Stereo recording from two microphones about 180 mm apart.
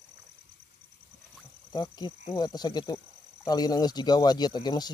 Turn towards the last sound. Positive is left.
turn(degrees=25)  # may be behind; listen again after turning